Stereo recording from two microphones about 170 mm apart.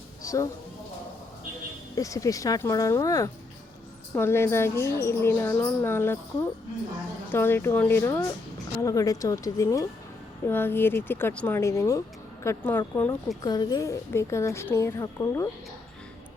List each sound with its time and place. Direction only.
0.2 s a sound: 20° left (ahead or behind)
2.0 s speech: 20° left (ahead or behind)
7.3 s speech: 15° left (ahead or behind)
13.4 s speech: 25° left (ahead or behind)